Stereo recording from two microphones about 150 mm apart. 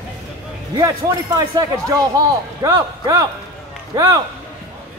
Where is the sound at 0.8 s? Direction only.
25° right (ahead or behind).